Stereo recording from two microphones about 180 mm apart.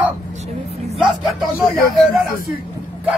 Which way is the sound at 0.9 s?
Centre (ahead or behind).